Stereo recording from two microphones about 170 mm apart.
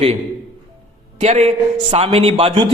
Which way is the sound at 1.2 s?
40° right (ahead or behind).